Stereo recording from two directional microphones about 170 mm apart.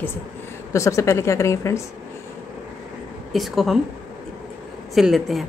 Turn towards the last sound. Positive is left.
turn(degrees=0)  # may be behind; listen again after turning